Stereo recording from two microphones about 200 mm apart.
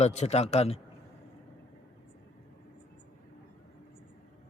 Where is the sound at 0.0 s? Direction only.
35° left (ahead or behind).